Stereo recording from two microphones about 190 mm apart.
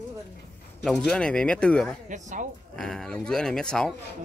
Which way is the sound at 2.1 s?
40° right (ahead or behind).